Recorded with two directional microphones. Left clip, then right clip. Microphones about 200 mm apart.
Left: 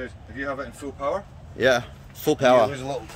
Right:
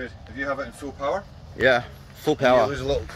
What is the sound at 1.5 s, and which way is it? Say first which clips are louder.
Speech: right 1 dB; 10° left (ahead or behind).